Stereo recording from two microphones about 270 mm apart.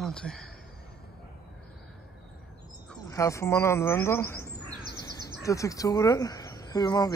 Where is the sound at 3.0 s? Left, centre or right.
Centre.